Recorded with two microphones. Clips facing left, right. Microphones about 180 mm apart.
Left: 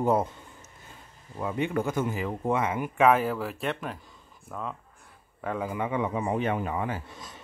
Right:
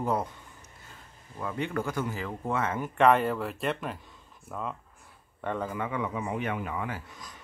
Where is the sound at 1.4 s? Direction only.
20° left (ahead or behind); by 5.6 s 5° left (ahead or behind).